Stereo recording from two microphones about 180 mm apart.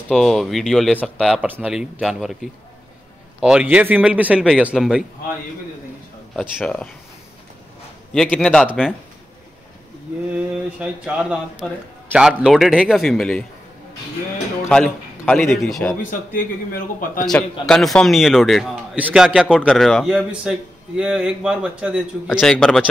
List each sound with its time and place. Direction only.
0.1 s a man's voice: centre (ahead or behind)
6.6 s speech: 5° left (ahead or behind)
8.1 s speech: 5° left (ahead or behind)
10.3 s speech: 5° right (ahead or behind)
14.7 s speech: 5° left (ahead or behind)
16.0 s a man's voice: 50° left (ahead or behind)
17.3 s speech: 5° left (ahead or behind)